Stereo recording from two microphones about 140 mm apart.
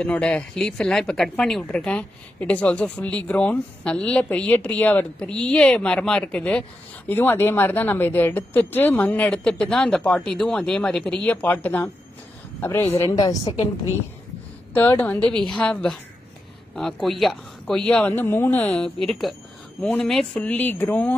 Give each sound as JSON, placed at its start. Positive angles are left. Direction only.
{"t": 0.0, "sound": "a woman's voice", "side_deg": 10}
{"t": 14.8, "sound": "speech", "side_deg": 10}